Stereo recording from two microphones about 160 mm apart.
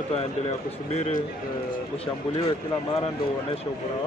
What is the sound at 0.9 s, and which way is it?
Speech, 45° left (ahead or behind).